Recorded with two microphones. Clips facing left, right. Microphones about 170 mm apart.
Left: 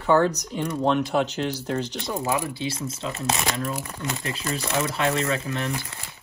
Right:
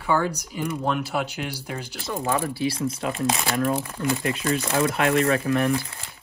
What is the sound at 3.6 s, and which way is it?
Speech, 30° right (ahead or behind).